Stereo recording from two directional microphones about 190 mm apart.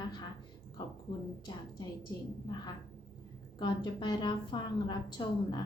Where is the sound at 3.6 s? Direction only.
25° left (ahead or behind).